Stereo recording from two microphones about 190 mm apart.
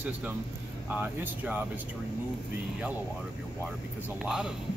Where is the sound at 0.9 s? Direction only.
10° right (ahead or behind).